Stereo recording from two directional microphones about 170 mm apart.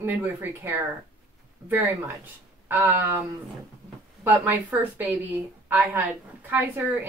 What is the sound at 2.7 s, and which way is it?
Speech, 15° right (ahead or behind).